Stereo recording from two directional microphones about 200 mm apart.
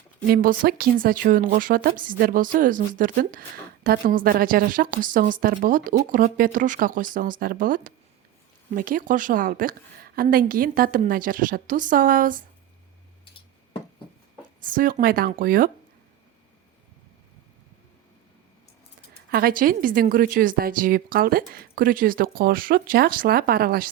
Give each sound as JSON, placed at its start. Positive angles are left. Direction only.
{"t": 0.3, "sound": "a woman's voice", "side_deg": -45}
{"t": 14.6, "sound": "a woman's voice", "side_deg": -45}
{"t": 19.3, "sound": "a woman's voice", "side_deg": -50}